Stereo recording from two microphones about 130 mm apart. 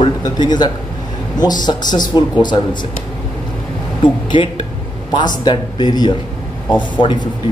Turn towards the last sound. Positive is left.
turn(degrees=10)  # may be behind; listen again after turning